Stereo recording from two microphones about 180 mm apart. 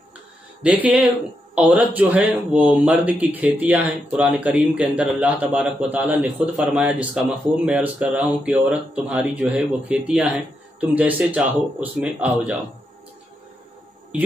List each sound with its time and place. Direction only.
0.6 s speech: 10° right (ahead or behind)